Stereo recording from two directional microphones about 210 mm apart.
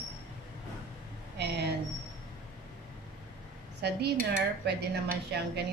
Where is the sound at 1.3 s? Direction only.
55° right (ahead or behind).